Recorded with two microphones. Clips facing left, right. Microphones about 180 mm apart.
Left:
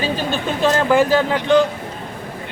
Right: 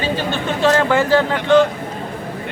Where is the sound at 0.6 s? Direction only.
15° left (ahead or behind).